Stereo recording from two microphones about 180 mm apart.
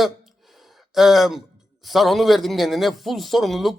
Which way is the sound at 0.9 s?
Centre (ahead or behind).